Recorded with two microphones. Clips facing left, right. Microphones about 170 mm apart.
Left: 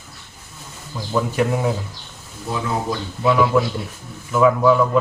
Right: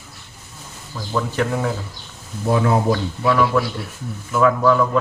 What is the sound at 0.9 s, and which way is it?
Speech, 10° left (ahead or behind).